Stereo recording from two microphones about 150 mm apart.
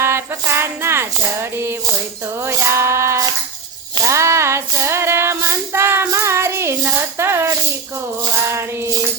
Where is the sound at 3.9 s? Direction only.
20° right (ahead or behind).